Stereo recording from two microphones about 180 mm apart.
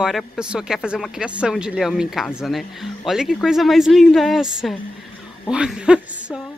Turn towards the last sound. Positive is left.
turn(degrees=-5)  # may be behind; listen again after turning